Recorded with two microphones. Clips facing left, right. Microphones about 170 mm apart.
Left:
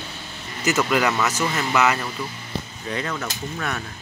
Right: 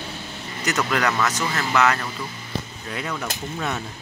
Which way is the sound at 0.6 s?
5° left (ahead or behind).